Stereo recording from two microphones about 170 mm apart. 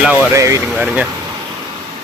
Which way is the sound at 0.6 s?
Centre (ahead or behind).